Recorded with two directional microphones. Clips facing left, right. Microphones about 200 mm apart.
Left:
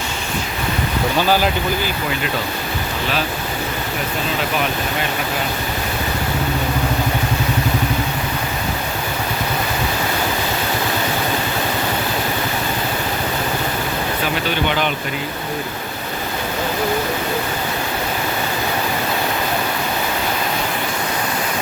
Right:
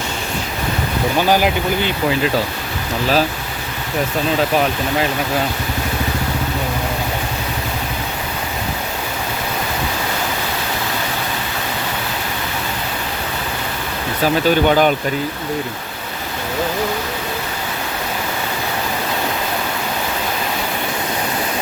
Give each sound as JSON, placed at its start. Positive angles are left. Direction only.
{"t": 1.3, "sound": "speech", "side_deg": -15}
{"t": 14.7, "sound": "speech", "side_deg": -45}